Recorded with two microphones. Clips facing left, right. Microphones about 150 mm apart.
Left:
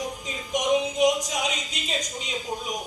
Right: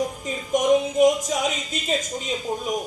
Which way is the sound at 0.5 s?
50° right (ahead or behind).